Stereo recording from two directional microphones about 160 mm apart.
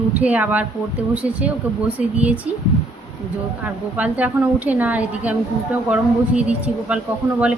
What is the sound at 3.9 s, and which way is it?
A woman's voice, 10° right (ahead or behind).